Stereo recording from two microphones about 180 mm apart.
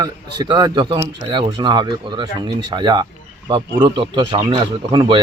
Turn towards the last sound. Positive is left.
turn(degrees=-25)  # may be behind; listen again after turning